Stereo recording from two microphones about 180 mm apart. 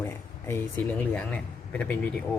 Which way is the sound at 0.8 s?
10° left (ahead or behind).